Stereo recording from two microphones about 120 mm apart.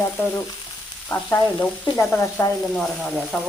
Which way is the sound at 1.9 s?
5° left (ahead or behind).